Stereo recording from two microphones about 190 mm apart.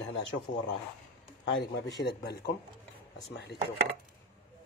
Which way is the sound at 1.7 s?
60° left (ahead or behind).